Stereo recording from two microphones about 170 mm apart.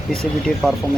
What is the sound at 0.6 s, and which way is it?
Speech, 5° left (ahead or behind).